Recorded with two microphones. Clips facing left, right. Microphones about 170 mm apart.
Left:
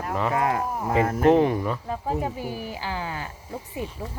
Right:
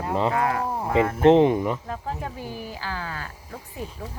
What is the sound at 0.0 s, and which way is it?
Speech, 25° right (ahead or behind).